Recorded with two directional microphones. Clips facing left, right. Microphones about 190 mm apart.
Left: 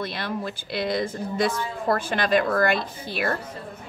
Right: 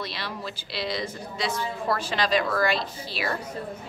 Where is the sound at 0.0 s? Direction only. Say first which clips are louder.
Left 5 dB; 50° left (ahead or behind).